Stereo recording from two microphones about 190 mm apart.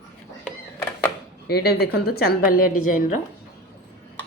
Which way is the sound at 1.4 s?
55° left (ahead or behind).